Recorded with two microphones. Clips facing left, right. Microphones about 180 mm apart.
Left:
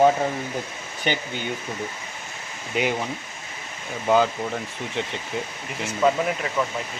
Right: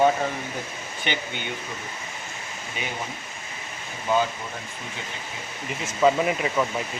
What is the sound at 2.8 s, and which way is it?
Speech, 90° left.